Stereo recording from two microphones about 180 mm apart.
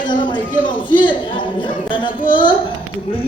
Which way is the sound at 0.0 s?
25° left (ahead or behind).